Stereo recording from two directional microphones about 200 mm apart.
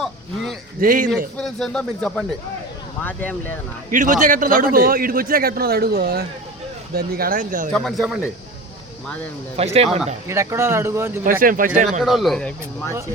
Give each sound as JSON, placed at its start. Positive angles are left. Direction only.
{"t": 0.8, "sound": "a man's voice", "side_deg": -45}
{"t": 1.4, "sound": "speech", "side_deg": 5}
{"t": 3.9, "sound": "a man's voice", "side_deg": -40}
{"t": 7.7, "sound": "speech", "side_deg": 5}
{"t": 9.7, "sound": "speech", "side_deg": -30}
{"t": 10.2, "sound": "speech", "side_deg": -15}
{"t": 11.2, "sound": "a man's voice", "side_deg": -45}
{"t": 12.0, "sound": "speech", "side_deg": 0}